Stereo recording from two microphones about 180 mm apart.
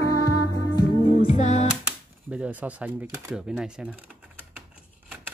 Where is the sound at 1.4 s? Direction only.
40° left (ahead or behind).